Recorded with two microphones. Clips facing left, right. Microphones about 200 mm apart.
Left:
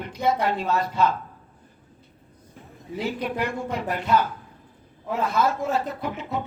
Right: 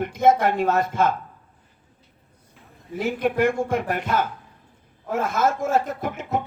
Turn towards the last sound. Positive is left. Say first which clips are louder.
# right 3 dB
turn(degrees=-50)  # may be behind; listen again after turning